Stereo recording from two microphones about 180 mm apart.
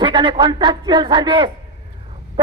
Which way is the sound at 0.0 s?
25° right (ahead or behind).